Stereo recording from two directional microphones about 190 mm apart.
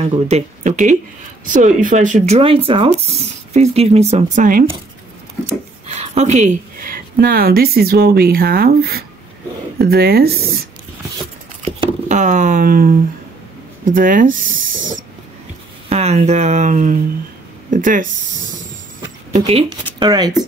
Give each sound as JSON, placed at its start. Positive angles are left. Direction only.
{"t": 0.0, "sound": "speech", "side_deg": -35}
{"t": 5.9, "sound": "speech", "side_deg": -35}
{"t": 12.1, "sound": "speech", "side_deg": -40}
{"t": 15.9, "sound": "speech", "side_deg": -35}
{"t": 19.3, "sound": "speech", "side_deg": -35}
{"t": 20.0, "sound": "speech", "side_deg": -20}